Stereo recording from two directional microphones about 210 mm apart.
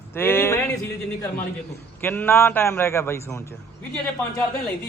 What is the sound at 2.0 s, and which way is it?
Speech, 10° left (ahead or behind).